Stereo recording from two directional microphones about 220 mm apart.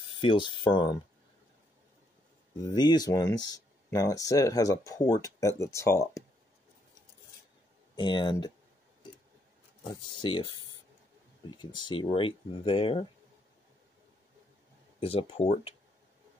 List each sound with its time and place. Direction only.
0.1 s speech: 20° left (ahead or behind)
2.6 s speech: 20° left (ahead or behind)
7.9 s speech: 20° left (ahead or behind)
10.1 s speech: 20° left (ahead or behind)
15.0 s speech: 25° left (ahead or behind)